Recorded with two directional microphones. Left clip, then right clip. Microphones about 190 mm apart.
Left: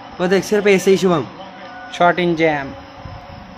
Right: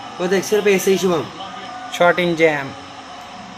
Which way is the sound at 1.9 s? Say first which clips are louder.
Even; 10° left (ahead or behind).